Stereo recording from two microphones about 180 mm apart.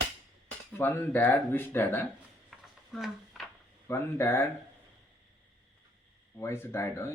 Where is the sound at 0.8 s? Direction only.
10° left (ahead or behind).